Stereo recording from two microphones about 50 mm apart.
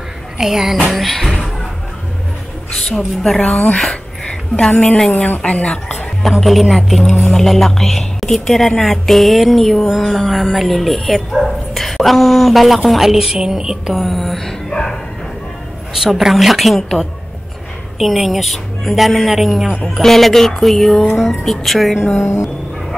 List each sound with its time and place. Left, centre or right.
0.4 s music: centre
3.3 s speech: left
3.7 s speech: centre
5.4 s speech: left
6.4 s a woman's voice: centre
14.0 s music: centre
15.9 s a woman's voice: centre
22.2 s speech: left